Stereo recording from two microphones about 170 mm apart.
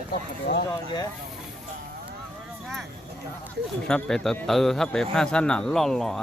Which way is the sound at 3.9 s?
5° left (ahead or behind).